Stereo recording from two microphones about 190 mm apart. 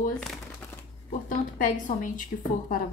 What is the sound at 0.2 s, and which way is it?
Crumpling, centre (ahead or behind).